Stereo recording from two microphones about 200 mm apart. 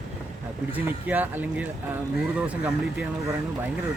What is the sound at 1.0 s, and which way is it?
Speech, 10° right (ahead or behind).